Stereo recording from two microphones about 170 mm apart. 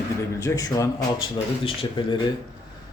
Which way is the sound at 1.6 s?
30° left (ahead or behind).